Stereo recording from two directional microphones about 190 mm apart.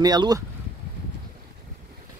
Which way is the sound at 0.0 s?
20° right (ahead or behind).